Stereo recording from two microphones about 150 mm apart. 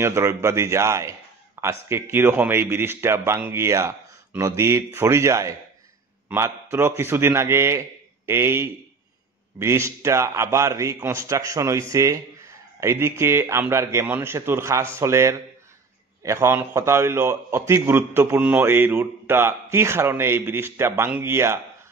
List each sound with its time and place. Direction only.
0.0 s a man's voice: 20° right (ahead or behind)